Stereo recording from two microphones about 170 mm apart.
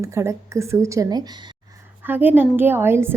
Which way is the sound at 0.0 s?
15° right (ahead or behind).